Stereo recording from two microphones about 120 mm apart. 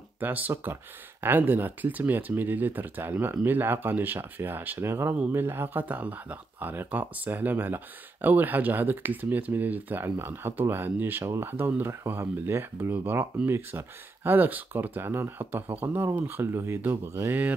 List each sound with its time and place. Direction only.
0.2 s speech: 15° right (ahead or behind)